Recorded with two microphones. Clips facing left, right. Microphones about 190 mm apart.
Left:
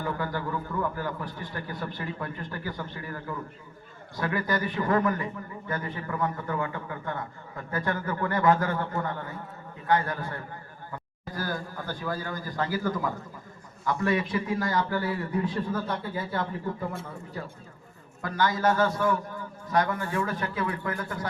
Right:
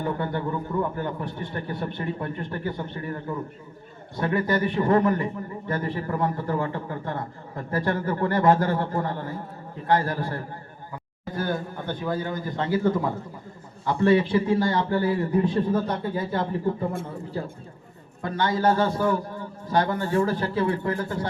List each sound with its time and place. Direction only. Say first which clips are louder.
0.0 s a man's voice: right 4 dB; 25° right (ahead or behind)